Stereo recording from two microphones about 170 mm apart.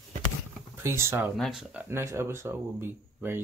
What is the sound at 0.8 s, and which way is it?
Speech, 15° right (ahead or behind).